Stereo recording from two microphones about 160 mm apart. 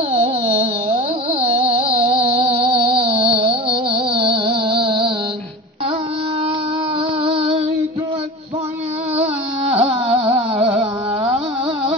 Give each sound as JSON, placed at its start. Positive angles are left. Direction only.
{"t": 0.1, "sound": "a sound", "side_deg": -35}
{"t": 1.4, "sound": "music", "side_deg": -35}
{"t": 7.2, "sound": "female singing", "side_deg": -35}
{"t": 9.2, "sound": "music", "side_deg": -35}